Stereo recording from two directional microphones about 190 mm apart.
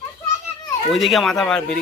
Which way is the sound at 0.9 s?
Centre (ahead or behind).